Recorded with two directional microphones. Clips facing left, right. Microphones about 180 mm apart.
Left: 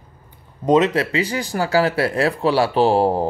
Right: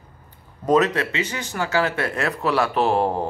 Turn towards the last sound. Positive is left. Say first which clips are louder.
# left 4 dB
turn(degrees=35)  # may be behind; listen again after turning